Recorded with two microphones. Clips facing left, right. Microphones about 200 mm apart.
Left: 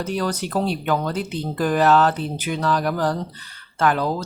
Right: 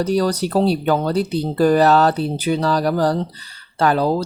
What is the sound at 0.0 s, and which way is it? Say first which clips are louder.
Speech: right 6 dB; 35° right (ahead or behind).